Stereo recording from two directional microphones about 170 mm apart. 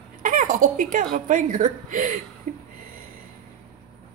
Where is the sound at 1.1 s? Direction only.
50° right (ahead or behind).